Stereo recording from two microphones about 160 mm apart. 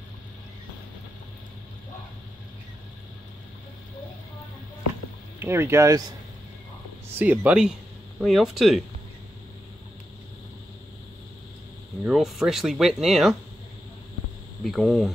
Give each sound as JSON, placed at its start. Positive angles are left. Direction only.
{"t": 5.4, "sound": "speech", "side_deg": -15}
{"t": 7.2, "sound": "speech", "side_deg": -10}
{"t": 12.0, "sound": "speech", "side_deg": 0}
{"t": 14.6, "sound": "speech", "side_deg": 0}